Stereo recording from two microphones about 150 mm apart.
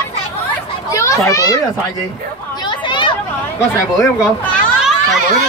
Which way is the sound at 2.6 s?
30° left (ahead or behind).